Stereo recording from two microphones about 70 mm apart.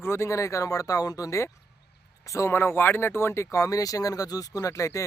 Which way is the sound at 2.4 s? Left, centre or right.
Left.